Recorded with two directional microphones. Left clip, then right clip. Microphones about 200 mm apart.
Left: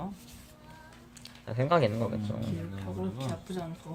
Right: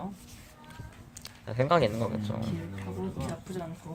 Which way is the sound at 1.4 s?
20° right (ahead or behind).